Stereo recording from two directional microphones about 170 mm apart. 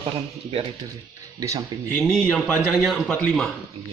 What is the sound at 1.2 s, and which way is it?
Speech, 20° right (ahead or behind).